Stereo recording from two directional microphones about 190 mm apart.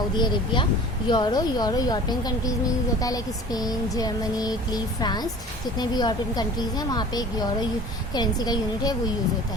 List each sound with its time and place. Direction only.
0.2 s speech: 25° left (ahead or behind)